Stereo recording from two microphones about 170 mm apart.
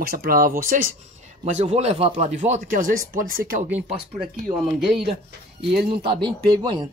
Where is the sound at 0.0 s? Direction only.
60° right (ahead or behind).